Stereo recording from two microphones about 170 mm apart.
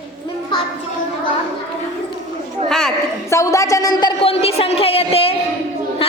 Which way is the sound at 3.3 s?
20° left (ahead or behind).